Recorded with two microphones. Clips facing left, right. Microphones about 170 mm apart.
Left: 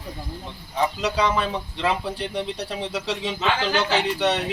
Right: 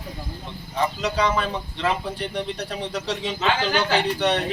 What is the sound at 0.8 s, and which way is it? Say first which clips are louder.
A man's voice: even; 10° left (ahead or behind).